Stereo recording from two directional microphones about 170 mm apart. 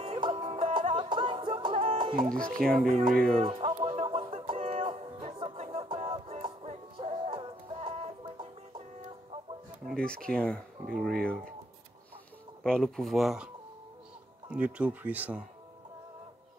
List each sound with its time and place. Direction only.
0.0 s music: 30° right (ahead or behind)
0.9 s music: 30° right (ahead or behind)
2.4 s speech: 5° left (ahead or behind)
3.0 s music: 55° right (ahead or behind)
3.4 s music: 30° right (ahead or behind)
9.8 s speech: 5° left (ahead or behind)
12.6 s speech: 5° left (ahead or behind)
14.5 s speech: 5° right (ahead or behind)